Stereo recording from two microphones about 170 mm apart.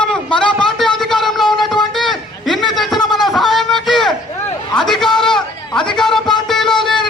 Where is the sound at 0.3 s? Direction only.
5° left (ahead or behind).